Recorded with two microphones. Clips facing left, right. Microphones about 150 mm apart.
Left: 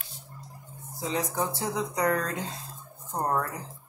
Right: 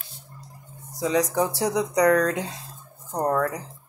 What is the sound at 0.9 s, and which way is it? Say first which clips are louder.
Speech: right 8 dB; 80° right.